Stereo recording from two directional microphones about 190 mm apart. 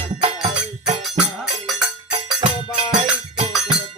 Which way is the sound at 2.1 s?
25° right (ahead or behind).